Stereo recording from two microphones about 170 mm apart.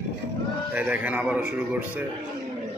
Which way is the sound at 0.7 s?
10° right (ahead or behind).